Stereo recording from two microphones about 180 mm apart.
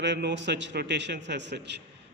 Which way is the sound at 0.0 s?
80° right.